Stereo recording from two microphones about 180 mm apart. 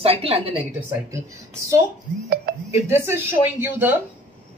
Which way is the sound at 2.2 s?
55° right (ahead or behind).